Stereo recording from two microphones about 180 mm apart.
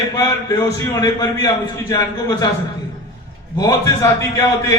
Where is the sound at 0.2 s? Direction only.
20° left (ahead or behind).